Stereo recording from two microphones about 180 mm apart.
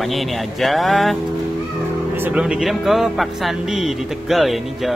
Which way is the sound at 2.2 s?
5° right (ahead or behind).